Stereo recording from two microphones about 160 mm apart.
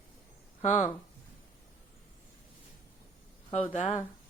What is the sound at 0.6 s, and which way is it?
Speech, 50° left (ahead or behind).